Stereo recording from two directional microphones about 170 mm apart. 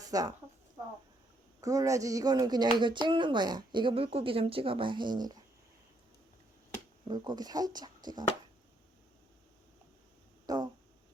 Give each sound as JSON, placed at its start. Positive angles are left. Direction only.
{"t": 0.0, "sound": "a woman's voice", "side_deg": -20}
{"t": 1.6, "sound": "speech", "side_deg": -20}
{"t": 7.1, "sound": "speech", "side_deg": -25}
{"t": 10.4, "sound": "a sound", "side_deg": -25}